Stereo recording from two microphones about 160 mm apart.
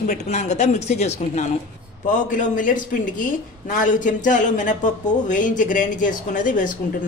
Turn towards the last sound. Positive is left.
turn(degrees=55)  # may be behind; listen again after turning